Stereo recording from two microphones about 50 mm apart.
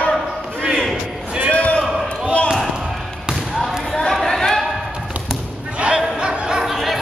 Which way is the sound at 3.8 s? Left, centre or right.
Centre.